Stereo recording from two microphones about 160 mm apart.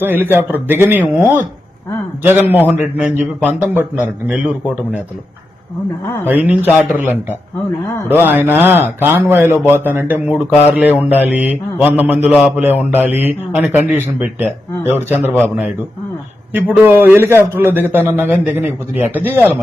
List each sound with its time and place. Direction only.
0.0 s a man's voice: 15° right (ahead or behind)
6.2 s a man's voice: 10° right (ahead or behind)